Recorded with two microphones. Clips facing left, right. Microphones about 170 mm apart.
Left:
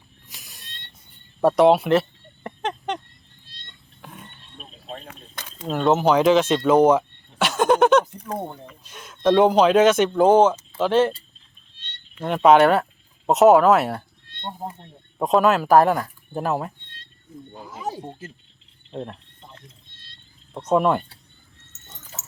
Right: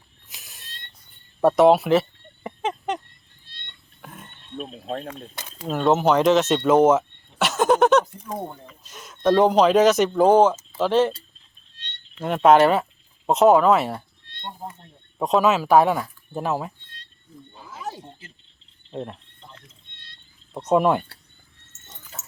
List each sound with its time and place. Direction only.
0.3 s cat: centre (ahead or behind)
1.4 s a sound: centre (ahead or behind)
4.0 s a sound: centre (ahead or behind)
4.5 s a sound: 50° right (ahead or behind)
5.3 s speech: 5° right (ahead or behind)
12.2 s speech: centre (ahead or behind)
14.4 s speech: 25° left (ahead or behind)
15.2 s speech: centre (ahead or behind)
17.7 s wild animals: 15° left (ahead or behind)
18.9 s speech: 5° right (ahead or behind)
20.5 s speech: 10° right (ahead or behind)